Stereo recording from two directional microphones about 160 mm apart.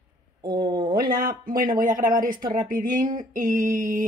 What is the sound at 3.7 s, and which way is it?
Music, 55° right (ahead or behind).